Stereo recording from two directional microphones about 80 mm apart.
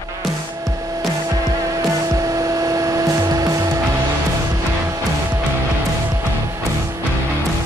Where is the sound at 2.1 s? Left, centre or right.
Right.